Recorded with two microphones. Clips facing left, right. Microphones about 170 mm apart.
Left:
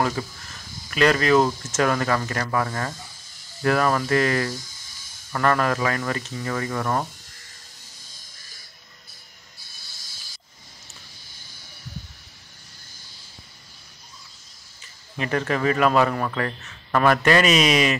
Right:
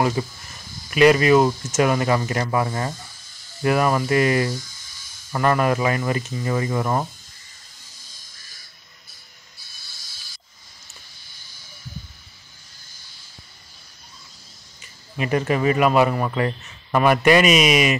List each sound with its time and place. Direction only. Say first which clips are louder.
0.2 s speech: right 4 dB; 10° right (ahead or behind)
15.1 s speech: right 3 dB; 15° right (ahead or behind)